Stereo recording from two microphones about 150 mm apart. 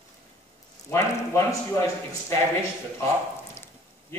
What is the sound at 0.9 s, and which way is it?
Speech, 20° left (ahead or behind).